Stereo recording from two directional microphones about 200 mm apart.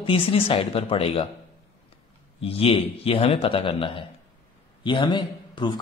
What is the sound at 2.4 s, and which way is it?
A man's voice, 30° left (ahead or behind).